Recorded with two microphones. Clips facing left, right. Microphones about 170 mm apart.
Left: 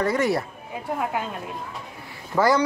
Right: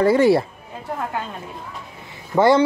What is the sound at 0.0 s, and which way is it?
Speech, 30° right (ahead or behind).